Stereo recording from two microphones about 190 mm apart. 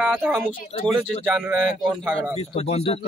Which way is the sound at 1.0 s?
5° left (ahead or behind).